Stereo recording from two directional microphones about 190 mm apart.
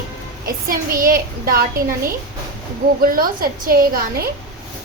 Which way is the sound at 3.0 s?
50° right (ahead or behind).